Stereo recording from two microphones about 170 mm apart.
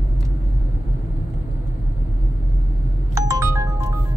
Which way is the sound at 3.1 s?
20° right (ahead or behind).